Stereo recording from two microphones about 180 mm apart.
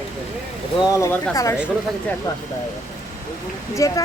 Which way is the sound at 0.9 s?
15° left (ahead or behind).